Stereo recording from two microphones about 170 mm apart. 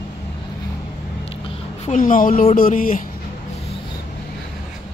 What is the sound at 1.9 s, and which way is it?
Speech, 50° left (ahead or behind).